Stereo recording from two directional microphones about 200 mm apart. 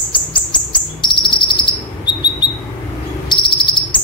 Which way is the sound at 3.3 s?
25° left (ahead or behind).